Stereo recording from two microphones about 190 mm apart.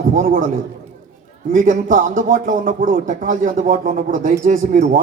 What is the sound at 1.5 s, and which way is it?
A man's voice, 45° right (ahead or behind).